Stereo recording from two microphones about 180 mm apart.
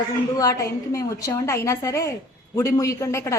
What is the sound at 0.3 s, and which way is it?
A woman's voice, 20° left (ahead or behind).